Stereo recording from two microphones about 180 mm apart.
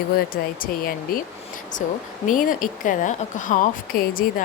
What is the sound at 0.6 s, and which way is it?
Speech, 50° left (ahead or behind).